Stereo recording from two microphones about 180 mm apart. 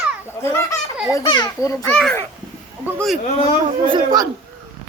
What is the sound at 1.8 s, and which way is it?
A child's voice, centre (ahead or behind).